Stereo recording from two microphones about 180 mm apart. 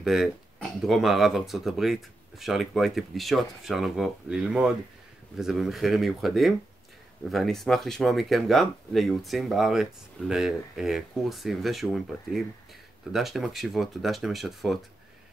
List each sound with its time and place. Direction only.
0.0 s speech: centre (ahead or behind)